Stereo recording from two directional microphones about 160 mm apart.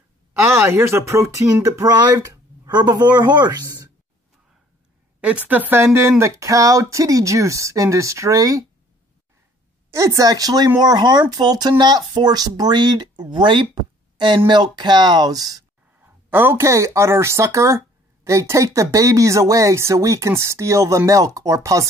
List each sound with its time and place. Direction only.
0.3 s speech: 15° right (ahead or behind)
5.2 s speech: 10° right (ahead or behind)
9.8 s speech: 20° right (ahead or behind)